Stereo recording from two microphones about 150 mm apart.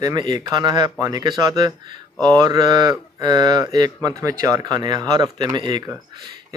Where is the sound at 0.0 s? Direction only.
30° right (ahead or behind).